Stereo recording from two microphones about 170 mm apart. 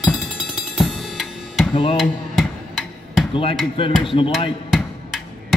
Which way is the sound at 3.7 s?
30° left (ahead or behind).